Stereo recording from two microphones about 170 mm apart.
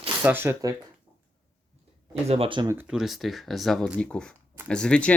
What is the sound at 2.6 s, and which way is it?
Speech, 10° right (ahead or behind).